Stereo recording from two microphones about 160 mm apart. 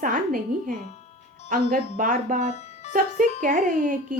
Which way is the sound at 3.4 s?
55° right (ahead or behind).